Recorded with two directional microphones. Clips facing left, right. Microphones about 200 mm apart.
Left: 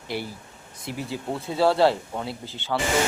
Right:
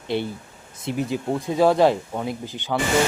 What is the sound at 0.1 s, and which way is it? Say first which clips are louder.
Speech: right 6 dB; 25° right (ahead or behind).